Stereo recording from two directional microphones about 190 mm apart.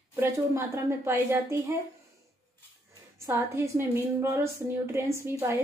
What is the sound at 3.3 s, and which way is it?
A woman's voice, 10° right (ahead or behind).